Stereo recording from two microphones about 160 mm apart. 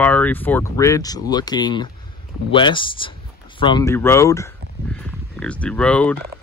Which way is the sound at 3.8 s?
15° left (ahead or behind).